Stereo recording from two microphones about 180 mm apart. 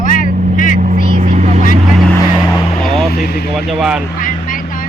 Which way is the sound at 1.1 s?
40° right (ahead or behind).